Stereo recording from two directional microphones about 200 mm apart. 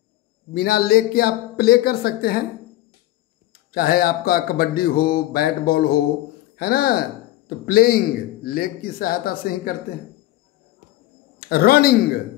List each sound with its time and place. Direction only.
0.6 s speech: 50° left (ahead or behind)
3.7 s speech: 50° left (ahead or behind)
11.3 s speech: 50° left (ahead or behind)